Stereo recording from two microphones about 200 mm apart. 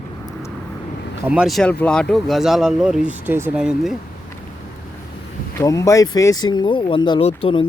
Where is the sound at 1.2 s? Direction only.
5° right (ahead or behind).